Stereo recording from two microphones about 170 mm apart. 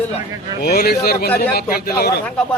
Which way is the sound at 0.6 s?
65° left (ahead or behind).